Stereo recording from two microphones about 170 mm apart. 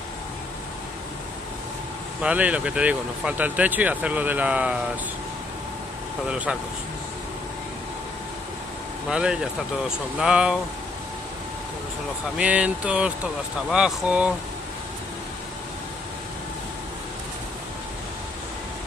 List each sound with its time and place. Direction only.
2.2 s speech: 10° right (ahead or behind)
6.2 s speech: 5° right (ahead or behind)
9.1 s speech: 5° right (ahead or behind)
12.4 s speech: 5° right (ahead or behind)